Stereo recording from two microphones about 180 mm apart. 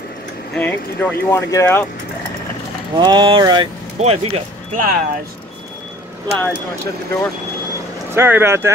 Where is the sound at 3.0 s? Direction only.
25° right (ahead or behind).